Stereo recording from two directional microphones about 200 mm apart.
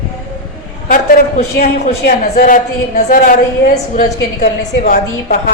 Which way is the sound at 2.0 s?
45° left (ahead or behind).